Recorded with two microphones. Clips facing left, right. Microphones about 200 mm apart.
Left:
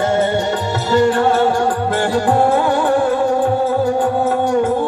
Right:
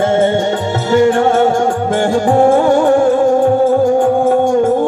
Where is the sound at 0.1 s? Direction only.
50° right (ahead or behind).